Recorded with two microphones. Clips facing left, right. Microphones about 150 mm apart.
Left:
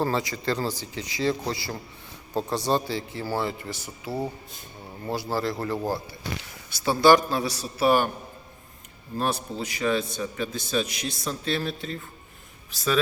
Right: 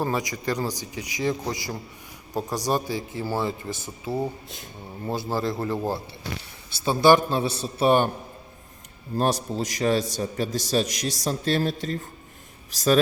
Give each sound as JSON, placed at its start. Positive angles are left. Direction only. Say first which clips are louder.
{"t": 0.0, "sound": "speech", "louder": "even", "side_deg": -15}
{"t": 5.3, "sound": "a man's voice", "louder": "right 1 dB", "side_deg": -20}
{"t": 9.1, "sound": "a man's voice", "louder": "right 4 dB", "side_deg": -40}